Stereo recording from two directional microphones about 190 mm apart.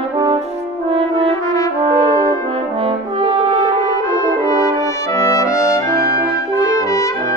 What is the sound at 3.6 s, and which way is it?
French horn, 15° left (ahead or behind).